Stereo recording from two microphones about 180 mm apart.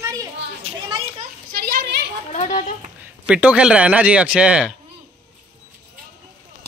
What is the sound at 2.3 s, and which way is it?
Speech, 45° left (ahead or behind).